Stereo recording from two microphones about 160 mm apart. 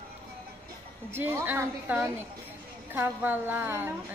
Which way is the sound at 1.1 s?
15° right (ahead or behind).